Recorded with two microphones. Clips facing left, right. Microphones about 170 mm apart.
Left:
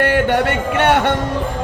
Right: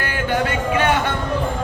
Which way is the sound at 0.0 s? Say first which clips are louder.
Left 6 dB; 70° left (ahead or behind).